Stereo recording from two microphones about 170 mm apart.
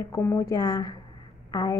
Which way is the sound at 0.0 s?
15° left (ahead or behind).